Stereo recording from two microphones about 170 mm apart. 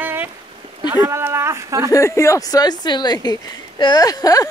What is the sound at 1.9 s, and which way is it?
Speech, 15° left (ahead or behind).